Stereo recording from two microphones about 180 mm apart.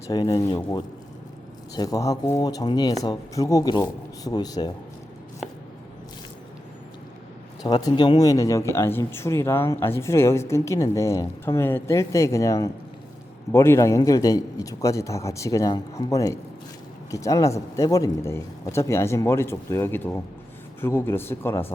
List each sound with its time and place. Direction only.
0.1 s speech: 20° left (ahead or behind)
7.6 s speech: 20° left (ahead or behind)